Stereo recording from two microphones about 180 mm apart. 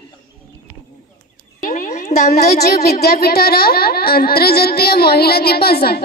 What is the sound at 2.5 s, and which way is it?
Speech, 60° left (ahead or behind).